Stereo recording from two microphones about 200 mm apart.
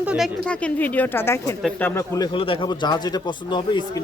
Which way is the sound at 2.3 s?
25° left (ahead or behind).